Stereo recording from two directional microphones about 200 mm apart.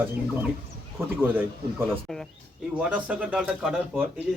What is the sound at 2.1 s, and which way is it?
Speech, centre (ahead or behind).